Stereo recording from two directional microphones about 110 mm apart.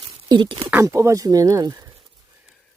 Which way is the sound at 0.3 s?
45° right (ahead or behind).